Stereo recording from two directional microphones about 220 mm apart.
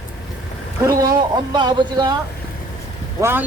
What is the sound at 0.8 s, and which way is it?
Speech, 15° right (ahead or behind).